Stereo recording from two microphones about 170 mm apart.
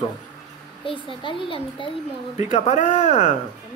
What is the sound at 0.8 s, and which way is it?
A child's voice, 30° left (ahead or behind).